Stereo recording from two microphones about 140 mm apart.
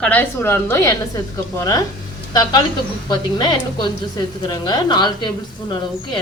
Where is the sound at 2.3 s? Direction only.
30° left (ahead or behind).